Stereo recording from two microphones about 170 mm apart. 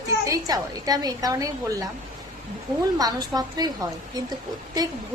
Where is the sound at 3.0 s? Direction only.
20° right (ahead or behind).